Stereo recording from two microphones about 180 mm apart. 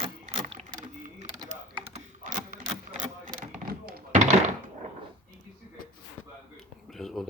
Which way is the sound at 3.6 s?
55° right (ahead or behind).